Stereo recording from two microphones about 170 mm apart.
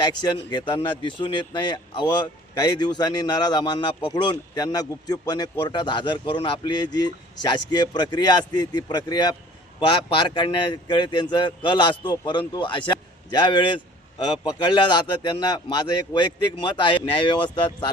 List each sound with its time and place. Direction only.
0.0 s speech: 25° left (ahead or behind)